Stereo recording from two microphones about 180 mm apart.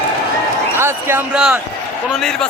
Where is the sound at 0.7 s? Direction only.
15° right (ahead or behind); by 2.4 s 5° left (ahead or behind).